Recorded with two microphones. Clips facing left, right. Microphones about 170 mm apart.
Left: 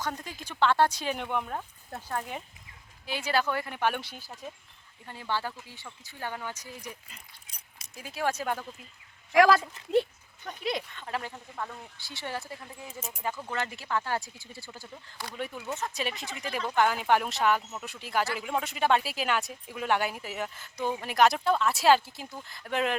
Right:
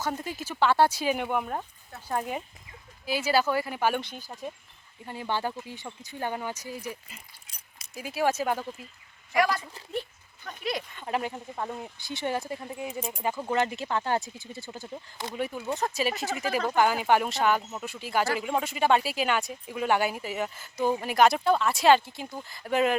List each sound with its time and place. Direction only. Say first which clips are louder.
0.0 s speech: right 4 dB; 5° right (ahead or behind)
5.0 s speech: right 3 dB; 15° right (ahead or behind)
9.3 s speech: left 5 dB; 90° left
10.4 s speech: even; 20° left (ahead or behind)
10.9 s speech: right 5 dB; 20° right (ahead or behind)
15.4 s speech: right 5 dB; 5° right (ahead or behind)
16.1 s speech: right 6 dB; 45° right (ahead or behind)
16.7 s speech: right 1 dB; 5° right (ahead or behind)